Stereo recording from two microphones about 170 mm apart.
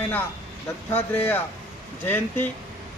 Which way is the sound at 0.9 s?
10° left (ahead or behind).